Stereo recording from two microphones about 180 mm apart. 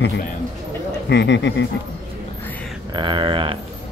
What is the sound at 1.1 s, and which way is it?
Speech, 75° left (ahead or behind).